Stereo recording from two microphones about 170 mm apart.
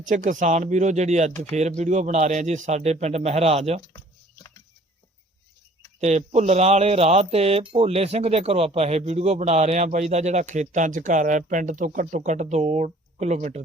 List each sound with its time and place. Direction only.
0.1 s speech: 50° right (ahead or behind)
6.0 s speech: 40° right (ahead or behind)